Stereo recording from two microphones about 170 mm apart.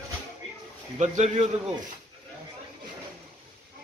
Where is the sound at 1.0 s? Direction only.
40° right (ahead or behind).